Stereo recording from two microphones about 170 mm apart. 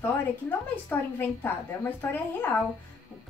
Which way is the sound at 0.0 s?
10° left (ahead or behind).